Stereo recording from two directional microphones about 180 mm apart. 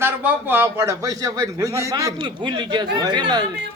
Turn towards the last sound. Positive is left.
turn(degrees=-25)  # may be behind; listen again after turning